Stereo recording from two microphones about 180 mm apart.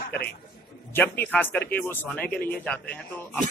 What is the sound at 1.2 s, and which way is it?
A man's voice, 10° left (ahead or behind).